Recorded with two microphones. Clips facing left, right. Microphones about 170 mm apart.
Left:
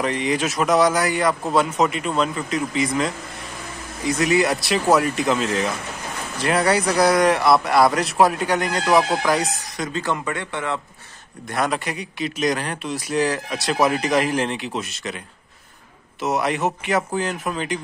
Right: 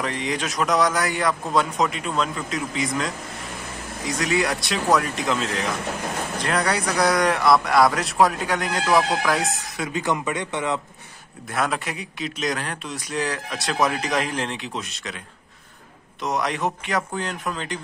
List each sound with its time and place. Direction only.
0.0 s a man's voice: centre (ahead or behind)
9.9 s speech: 15° right (ahead or behind)
11.4 s a man's voice: centre (ahead or behind)